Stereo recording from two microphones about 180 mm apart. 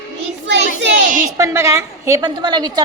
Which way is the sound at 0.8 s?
70° right (ahead or behind).